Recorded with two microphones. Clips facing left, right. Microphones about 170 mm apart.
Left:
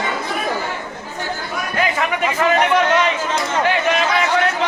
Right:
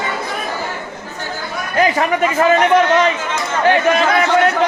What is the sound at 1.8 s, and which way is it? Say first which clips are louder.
A man's voice: right 6 dB; 40° right (ahead or behind).